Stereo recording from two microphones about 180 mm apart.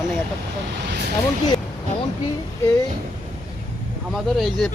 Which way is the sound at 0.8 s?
65° right (ahead or behind).